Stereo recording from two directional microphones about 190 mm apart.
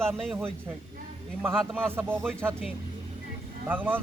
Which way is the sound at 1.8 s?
10° right (ahead or behind).